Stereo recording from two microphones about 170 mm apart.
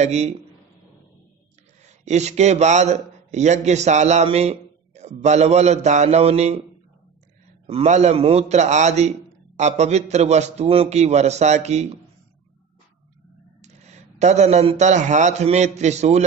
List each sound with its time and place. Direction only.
0.0 s a man's voice: 40° right (ahead or behind)
1.9 s a man's voice: 40° right (ahead or behind)
7.6 s a man's voice: 35° right (ahead or behind)
13.6 s speech: 40° right (ahead or behind)